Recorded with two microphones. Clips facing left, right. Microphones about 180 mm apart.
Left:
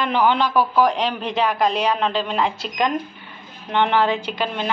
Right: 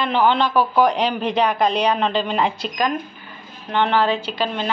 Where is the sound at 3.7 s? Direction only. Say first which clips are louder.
Even; 15° left (ahead or behind).